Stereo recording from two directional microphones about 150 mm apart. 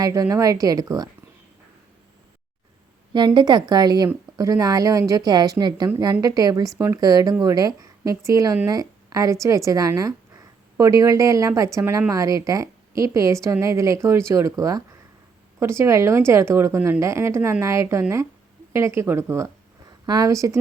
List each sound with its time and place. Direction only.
0.0 s a woman's voice: 20° right (ahead or behind)
3.1 s a woman's voice: 30° right (ahead or behind)